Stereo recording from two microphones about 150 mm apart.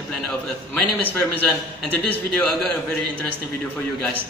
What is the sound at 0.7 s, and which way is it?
A man's voice, 10° left (ahead or behind).